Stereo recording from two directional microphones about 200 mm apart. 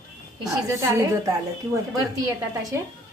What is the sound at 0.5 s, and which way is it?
Speech, 15° right (ahead or behind).